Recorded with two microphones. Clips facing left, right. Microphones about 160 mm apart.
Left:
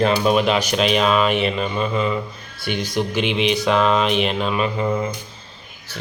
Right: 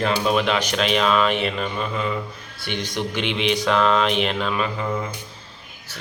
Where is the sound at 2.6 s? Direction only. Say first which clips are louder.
Left 4 dB; 10° left (ahead or behind).